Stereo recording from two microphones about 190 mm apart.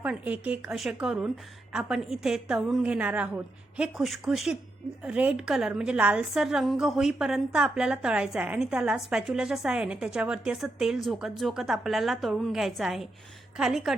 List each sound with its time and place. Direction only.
0.0 s a woman's voice: 5° right (ahead or behind)